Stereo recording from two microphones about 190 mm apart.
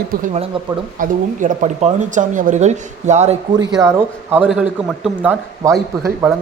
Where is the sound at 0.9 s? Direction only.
45° right (ahead or behind).